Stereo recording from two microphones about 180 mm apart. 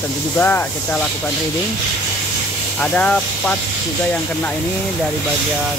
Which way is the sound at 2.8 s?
5° left (ahead or behind).